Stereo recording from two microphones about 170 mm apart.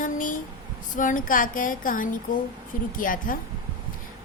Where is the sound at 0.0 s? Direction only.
50° left (ahead or behind).